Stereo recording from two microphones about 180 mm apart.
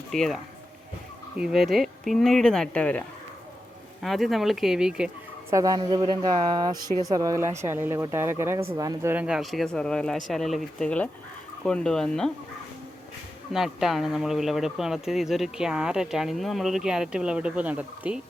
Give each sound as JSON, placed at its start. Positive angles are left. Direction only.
{"t": 0.1, "sound": "speech", "side_deg": 0}
{"t": 4.0, "sound": "speech", "side_deg": 0}
{"t": 5.5, "sound": "a woman's voice", "side_deg": -20}
{"t": 9.1, "sound": "speech", "side_deg": -5}
{"t": 13.5, "sound": "speech", "side_deg": 0}